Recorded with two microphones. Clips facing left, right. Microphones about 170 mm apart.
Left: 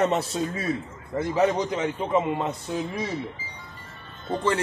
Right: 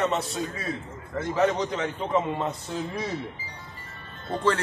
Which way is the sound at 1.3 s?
10° left (ahead or behind).